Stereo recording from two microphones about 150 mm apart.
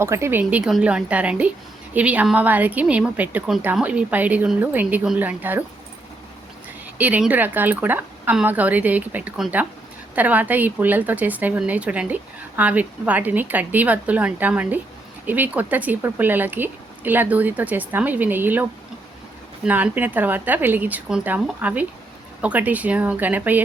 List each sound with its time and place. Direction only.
0.0 s a woman's voice: 15° right (ahead or behind)
7.0 s a woman's voice: 10° right (ahead or behind)